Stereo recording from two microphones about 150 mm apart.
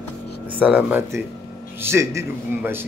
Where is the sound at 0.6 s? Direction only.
10° right (ahead or behind).